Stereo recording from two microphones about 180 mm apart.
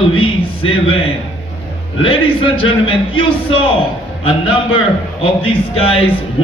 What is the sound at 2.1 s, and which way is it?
A man's voice, 30° left (ahead or behind).